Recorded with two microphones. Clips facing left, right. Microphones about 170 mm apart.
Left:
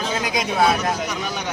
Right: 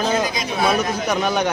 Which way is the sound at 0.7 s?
60° right (ahead or behind).